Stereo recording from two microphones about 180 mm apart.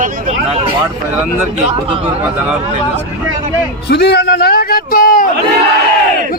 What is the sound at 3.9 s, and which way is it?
A man's voice, 65° left (ahead or behind).